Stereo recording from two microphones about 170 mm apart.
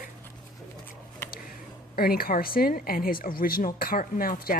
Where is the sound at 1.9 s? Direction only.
60° left (ahead or behind).